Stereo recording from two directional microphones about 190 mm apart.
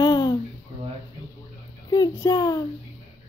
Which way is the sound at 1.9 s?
20° left (ahead or behind).